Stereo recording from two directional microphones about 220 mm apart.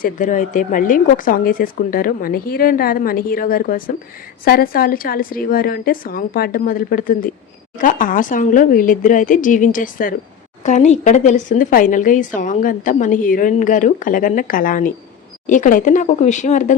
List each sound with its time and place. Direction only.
0.0 s speech: 35° left (ahead or behind)